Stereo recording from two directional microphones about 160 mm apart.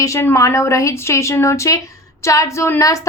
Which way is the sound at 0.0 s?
20° left (ahead or behind).